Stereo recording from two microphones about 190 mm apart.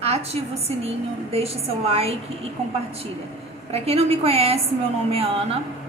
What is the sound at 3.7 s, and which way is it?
Speech, 30° right (ahead or behind).